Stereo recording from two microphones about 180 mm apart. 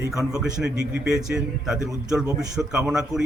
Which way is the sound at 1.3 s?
5° right (ahead or behind).